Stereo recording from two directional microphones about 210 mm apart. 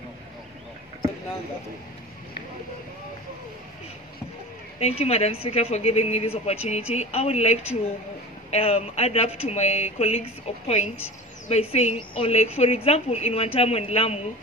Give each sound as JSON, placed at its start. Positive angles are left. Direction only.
{"t": 4.7, "sound": "speech", "side_deg": 30}